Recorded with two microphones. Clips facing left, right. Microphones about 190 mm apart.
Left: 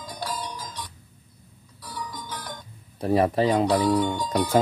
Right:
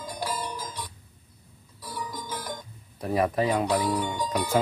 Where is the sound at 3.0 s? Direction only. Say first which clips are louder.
Left 4 dB; 30° left (ahead or behind).